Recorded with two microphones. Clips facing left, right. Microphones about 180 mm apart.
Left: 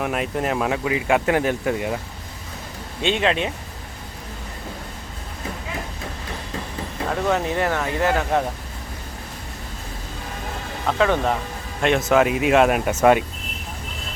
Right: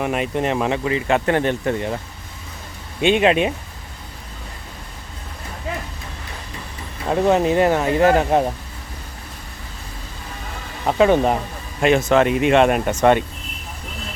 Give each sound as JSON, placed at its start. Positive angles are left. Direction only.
{"t": 0.0, "sound": "speech", "side_deg": 0}
{"t": 3.0, "sound": "speech", "side_deg": -15}
{"t": 7.1, "sound": "speech", "side_deg": -20}
{"t": 10.8, "sound": "speech", "side_deg": -20}
{"t": 11.8, "sound": "speech", "side_deg": 0}